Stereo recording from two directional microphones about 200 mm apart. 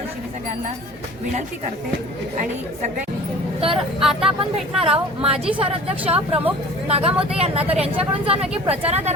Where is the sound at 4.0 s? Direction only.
Centre (ahead or behind).